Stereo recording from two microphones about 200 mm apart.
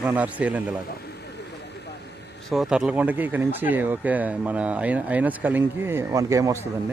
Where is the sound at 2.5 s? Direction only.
Centre (ahead or behind).